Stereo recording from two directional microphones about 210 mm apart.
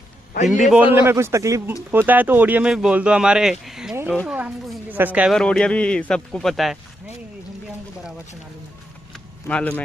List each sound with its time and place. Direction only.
0.5 s a man's voice: centre (ahead or behind)
4.4 s speech: 10° right (ahead or behind)
9.5 s speech: 5° left (ahead or behind)